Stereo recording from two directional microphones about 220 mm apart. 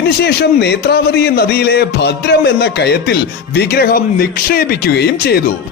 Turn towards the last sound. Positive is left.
turn(degrees=45)  # may be behind; listen again after turning